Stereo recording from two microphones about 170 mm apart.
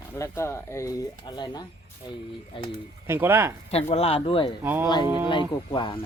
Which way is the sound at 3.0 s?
15° right (ahead or behind).